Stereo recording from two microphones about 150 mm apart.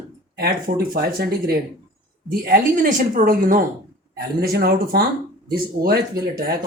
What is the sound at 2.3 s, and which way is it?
Speech, 75° right (ahead or behind).